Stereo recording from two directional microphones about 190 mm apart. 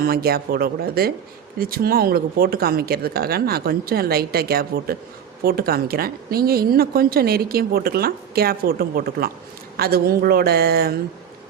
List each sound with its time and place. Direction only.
0.0 s a woman's voice: 55° right (ahead or behind)